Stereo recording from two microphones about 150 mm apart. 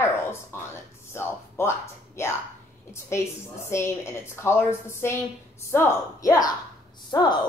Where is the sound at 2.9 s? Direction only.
20° left (ahead or behind).